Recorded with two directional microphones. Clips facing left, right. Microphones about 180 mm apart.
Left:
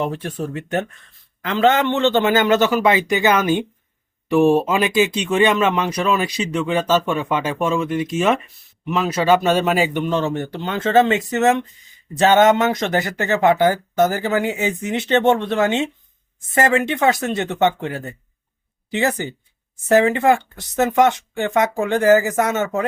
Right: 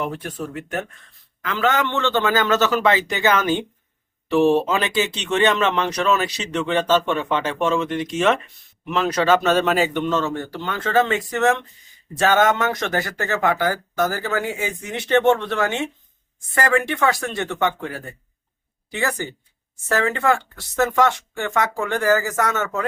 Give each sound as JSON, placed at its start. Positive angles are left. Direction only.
{"t": 0.0, "sound": "speech", "side_deg": 30}